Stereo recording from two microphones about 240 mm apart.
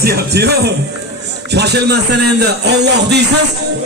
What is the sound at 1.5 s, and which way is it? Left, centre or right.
A man's voice, right.